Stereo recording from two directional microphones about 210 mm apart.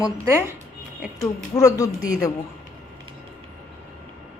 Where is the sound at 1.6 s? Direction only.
15° left (ahead or behind).